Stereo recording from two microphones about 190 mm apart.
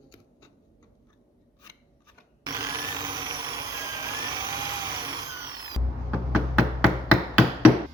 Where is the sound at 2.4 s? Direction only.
20° right (ahead or behind).